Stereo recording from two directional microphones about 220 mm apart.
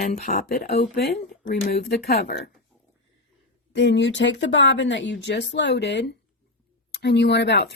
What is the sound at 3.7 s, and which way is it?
A woman's voice, 55° left (ahead or behind).